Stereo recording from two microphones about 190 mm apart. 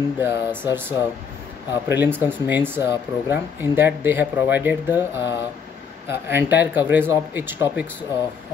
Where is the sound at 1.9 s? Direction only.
10° right (ahead or behind).